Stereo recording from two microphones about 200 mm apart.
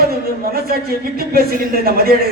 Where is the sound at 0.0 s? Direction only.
50° right (ahead or behind).